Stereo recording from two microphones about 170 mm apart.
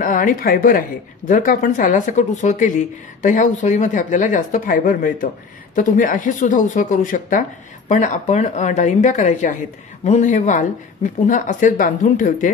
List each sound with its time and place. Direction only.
0.0 s speech: 50° left (ahead or behind)